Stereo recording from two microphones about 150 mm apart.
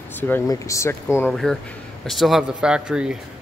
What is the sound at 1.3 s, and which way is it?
Speech, 5° left (ahead or behind).